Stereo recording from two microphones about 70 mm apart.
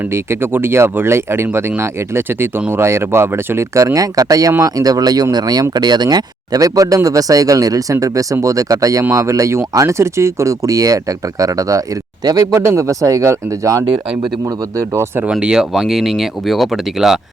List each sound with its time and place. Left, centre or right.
0.1 s speech: right
3.9 s speech: right
12.5 s speech: right
15.3 s speech: centre